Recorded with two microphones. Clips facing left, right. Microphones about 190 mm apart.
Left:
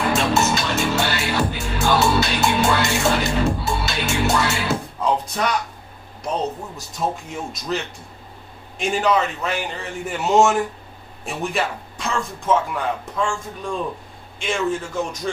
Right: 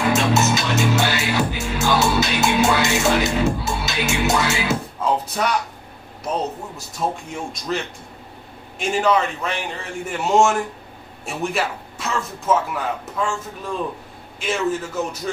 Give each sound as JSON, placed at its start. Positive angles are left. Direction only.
{"t": 0.1, "sound": "music", "side_deg": -5}
{"t": 7.0, "sound": "speech", "side_deg": 0}
{"t": 14.4, "sound": "speech", "side_deg": -5}